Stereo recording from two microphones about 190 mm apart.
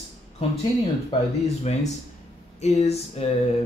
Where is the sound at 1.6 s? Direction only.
35° left (ahead or behind).